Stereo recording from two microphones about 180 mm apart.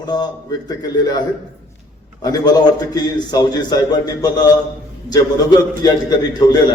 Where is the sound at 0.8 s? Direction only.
20° left (ahead or behind).